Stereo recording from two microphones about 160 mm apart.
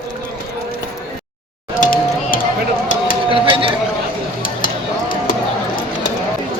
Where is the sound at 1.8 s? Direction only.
60° left (ahead or behind).